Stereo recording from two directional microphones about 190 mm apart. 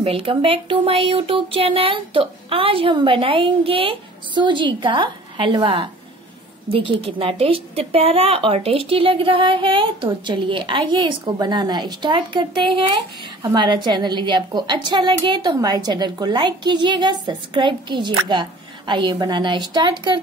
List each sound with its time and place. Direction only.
0.0 s speech: 30° right (ahead or behind)